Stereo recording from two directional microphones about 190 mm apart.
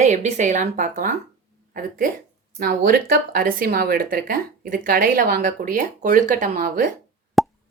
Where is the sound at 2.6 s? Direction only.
50° right (ahead or behind).